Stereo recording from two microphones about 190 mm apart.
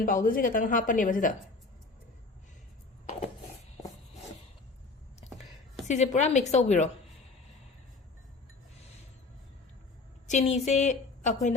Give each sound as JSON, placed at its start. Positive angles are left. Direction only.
{"t": 0.0, "sound": "a woman's voice", "side_deg": 45}
{"t": 5.9, "sound": "a woman's voice", "side_deg": 35}
{"t": 10.2, "sound": "a woman's voice", "side_deg": 40}